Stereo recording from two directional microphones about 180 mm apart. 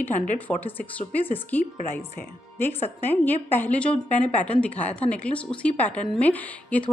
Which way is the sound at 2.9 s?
10° left (ahead or behind).